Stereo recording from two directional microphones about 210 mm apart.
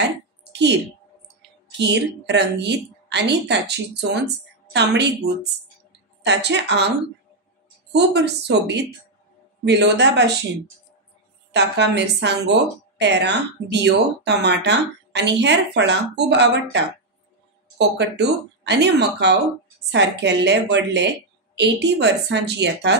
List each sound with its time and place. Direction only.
0.5 s a sound: 55° right (ahead or behind)
1.8 s a woman's voice: 55° right (ahead or behind)
6.2 s a woman's voice: 55° right (ahead or behind)
7.9 s a woman's voice: 55° right (ahead or behind)
11.5 s a woman's voice: 55° right (ahead or behind)